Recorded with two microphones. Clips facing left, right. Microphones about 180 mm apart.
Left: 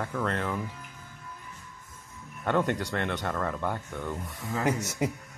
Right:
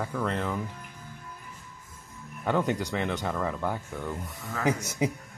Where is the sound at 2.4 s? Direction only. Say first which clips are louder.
Even; centre (ahead or behind).